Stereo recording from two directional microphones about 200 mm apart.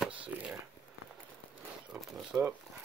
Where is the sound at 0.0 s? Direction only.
5° right (ahead or behind).